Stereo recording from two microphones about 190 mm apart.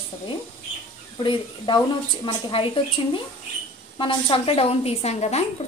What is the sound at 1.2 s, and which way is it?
Speech, 25° left (ahead or behind).